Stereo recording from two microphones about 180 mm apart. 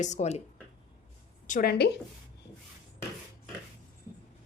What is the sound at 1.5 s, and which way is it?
Speech, 45° left (ahead or behind).